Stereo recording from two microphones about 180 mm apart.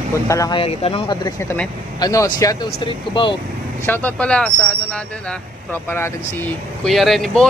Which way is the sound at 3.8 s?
10° left (ahead or behind).